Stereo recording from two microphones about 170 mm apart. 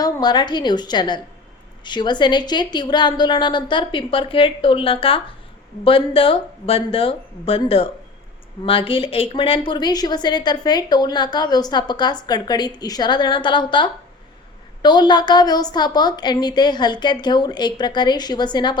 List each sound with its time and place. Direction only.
0.0 s a woman's voice: 25° left (ahead or behind)